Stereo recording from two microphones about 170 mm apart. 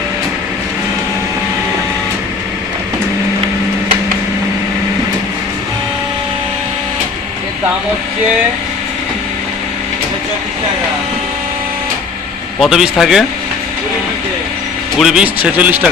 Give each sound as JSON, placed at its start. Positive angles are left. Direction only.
{"t": 12.5, "sound": "a man's voice", "side_deg": 0}
{"t": 14.9, "sound": "speech", "side_deg": -5}